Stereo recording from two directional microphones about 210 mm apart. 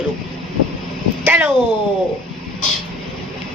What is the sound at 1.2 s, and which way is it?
Speech, 10° right (ahead or behind).